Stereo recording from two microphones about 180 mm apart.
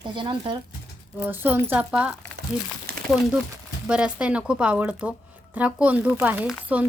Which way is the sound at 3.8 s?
5° right (ahead or behind).